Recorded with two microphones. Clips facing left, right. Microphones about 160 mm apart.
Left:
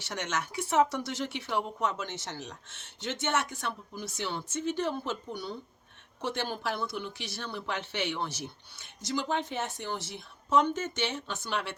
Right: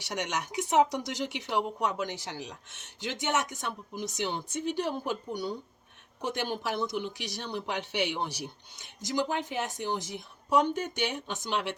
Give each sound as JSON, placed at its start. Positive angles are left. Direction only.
{"t": 0.0, "sound": "speech", "side_deg": -15}